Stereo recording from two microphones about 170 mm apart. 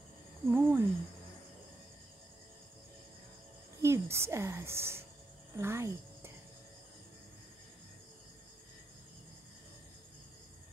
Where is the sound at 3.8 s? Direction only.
15° right (ahead or behind).